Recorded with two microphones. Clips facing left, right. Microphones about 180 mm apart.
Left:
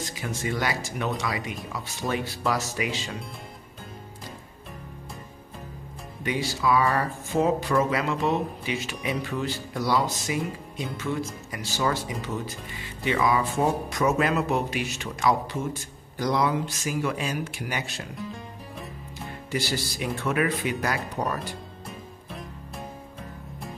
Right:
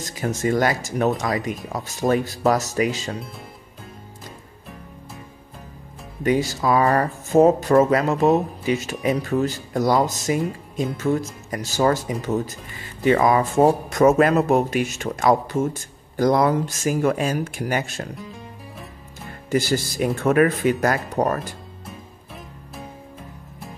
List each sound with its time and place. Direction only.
0.0 s speech: 45° right (ahead or behind)
6.2 s speech: 45° right (ahead or behind)
19.5 s speech: 45° right (ahead or behind)
22.3 s music: centre (ahead or behind)